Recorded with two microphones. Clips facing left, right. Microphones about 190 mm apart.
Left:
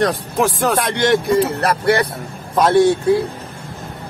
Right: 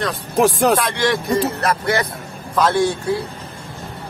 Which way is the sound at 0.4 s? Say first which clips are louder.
Right 3 dB; 35° right (ahead or behind).